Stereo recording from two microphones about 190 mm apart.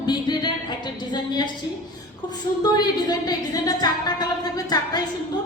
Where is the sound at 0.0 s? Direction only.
20° left (ahead or behind).